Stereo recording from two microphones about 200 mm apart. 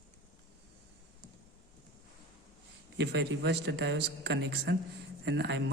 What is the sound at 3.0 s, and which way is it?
Speech, 60° right (ahead or behind).